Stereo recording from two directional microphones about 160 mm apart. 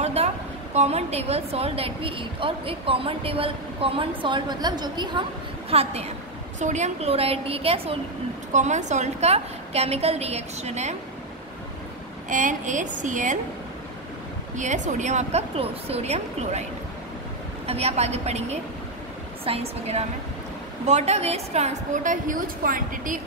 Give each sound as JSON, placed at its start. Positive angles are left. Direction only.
{"t": 0.0, "sound": "a sound", "side_deg": -40}
{"t": 0.7, "sound": "a woman's voice", "side_deg": -40}
{"t": 5.7, "sound": "a woman's voice", "side_deg": -40}
{"t": 8.5, "sound": "a woman's voice", "side_deg": -45}
{"t": 12.3, "sound": "a woman's voice", "side_deg": -50}
{"t": 14.6, "sound": "a woman's voice", "side_deg": -50}
{"t": 17.6, "sound": "a woman's voice", "side_deg": -40}